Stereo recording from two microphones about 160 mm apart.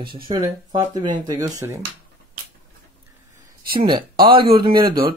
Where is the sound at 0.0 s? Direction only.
30° right (ahead or behind).